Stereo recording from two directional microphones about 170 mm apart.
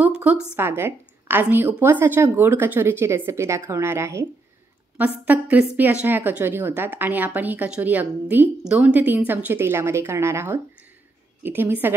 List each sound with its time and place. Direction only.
0.0 s a woman's voice: 10° right (ahead or behind)